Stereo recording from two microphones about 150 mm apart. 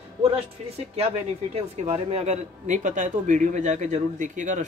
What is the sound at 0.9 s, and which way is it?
A man's voice, 45° right (ahead or behind).